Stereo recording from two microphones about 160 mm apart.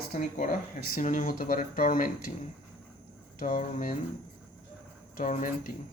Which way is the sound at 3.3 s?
60° left (ahead or behind).